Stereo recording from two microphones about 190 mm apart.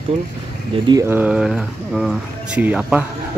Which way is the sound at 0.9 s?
10° right (ahead or behind).